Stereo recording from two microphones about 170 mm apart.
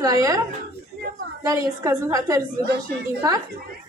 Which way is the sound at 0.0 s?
20° right (ahead or behind).